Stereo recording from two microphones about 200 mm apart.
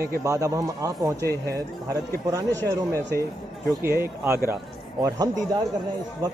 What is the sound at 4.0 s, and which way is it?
Speech, 10° right (ahead or behind).